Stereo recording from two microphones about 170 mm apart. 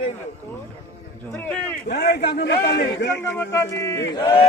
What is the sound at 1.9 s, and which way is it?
Speech, 75° left (ahead or behind).